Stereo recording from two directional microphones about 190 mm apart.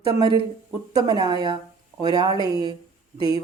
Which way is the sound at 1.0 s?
20° right (ahead or behind).